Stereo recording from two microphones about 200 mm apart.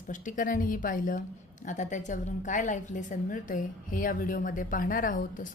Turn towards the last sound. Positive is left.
turn(degrees=40)  # may be behind; listen again after turning